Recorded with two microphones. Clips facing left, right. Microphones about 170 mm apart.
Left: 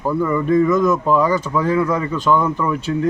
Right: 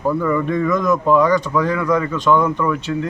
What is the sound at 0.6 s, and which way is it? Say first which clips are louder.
Speech: left 1 dB; 5° left (ahead or behind).